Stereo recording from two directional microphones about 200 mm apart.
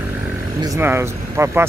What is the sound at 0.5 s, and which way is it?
Speech, 15° right (ahead or behind).